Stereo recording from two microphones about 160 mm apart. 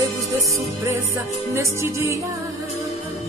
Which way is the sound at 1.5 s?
15° right (ahead or behind).